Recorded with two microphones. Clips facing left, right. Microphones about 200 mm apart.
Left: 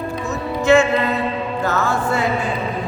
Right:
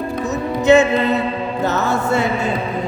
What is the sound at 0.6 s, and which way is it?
Music, 20° right (ahead or behind).